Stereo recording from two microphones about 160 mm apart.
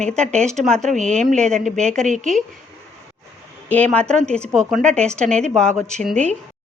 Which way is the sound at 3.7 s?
10° left (ahead or behind).